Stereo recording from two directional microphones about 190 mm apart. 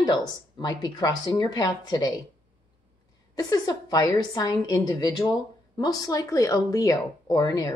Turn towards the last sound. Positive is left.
turn(degrees=20)  # may be behind; listen again after turning